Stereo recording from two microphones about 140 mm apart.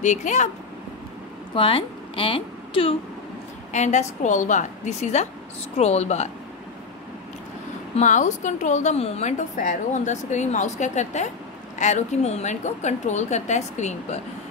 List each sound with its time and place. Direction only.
0.0 s a woman's voice: 55° left (ahead or behind)
1.5 s a woman's voice: 40° left (ahead or behind)
3.7 s a woman's voice: 55° left (ahead or behind)
7.9 s a woman's voice: 60° left (ahead or behind)